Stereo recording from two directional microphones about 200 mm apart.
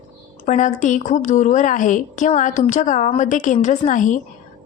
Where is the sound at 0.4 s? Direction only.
40° left (ahead or behind).